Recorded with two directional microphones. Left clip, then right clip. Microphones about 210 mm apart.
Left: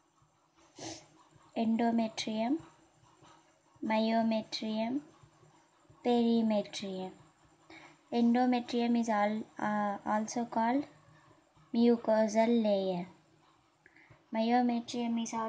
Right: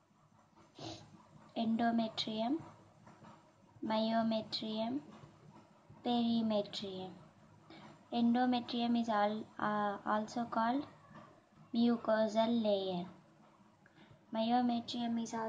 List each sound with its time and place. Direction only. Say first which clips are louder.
1.5 s a woman's voice: left 3 dB; 40° left (ahead or behind)
3.8 s a woman's voice: left 4 dB; 40° left (ahead or behind)
6.0 s a woman's voice: left 6 dB; 40° left (ahead or behind)
8.1 s a woman's voice: left 4 dB; 40° left (ahead or behind)
14.3 s a woman's voice: left 4 dB; 40° left (ahead or behind)